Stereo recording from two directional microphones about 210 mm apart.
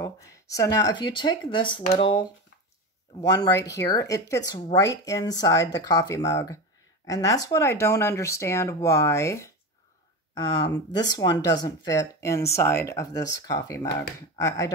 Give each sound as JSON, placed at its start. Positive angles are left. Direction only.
{"t": 0.0, "sound": "speech", "side_deg": 15}